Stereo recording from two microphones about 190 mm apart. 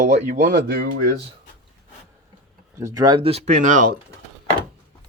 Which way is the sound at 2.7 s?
20° right (ahead or behind).